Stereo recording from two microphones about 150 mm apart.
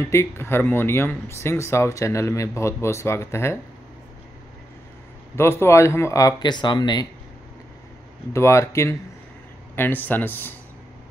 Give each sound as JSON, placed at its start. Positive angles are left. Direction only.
{"t": 0.1, "sound": "speech", "side_deg": 15}
{"t": 5.3, "sound": "speech", "side_deg": 15}
{"t": 8.3, "sound": "speech", "side_deg": 20}